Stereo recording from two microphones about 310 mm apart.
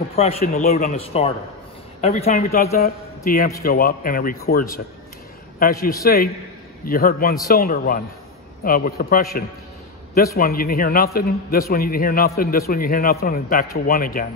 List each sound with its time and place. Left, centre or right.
0.1 s a man's voice: centre